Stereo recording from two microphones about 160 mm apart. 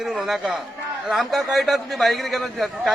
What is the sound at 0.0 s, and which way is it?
Speech, centre (ahead or behind).